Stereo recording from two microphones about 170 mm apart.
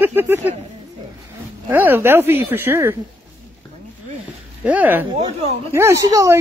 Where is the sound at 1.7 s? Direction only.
10° right (ahead or behind).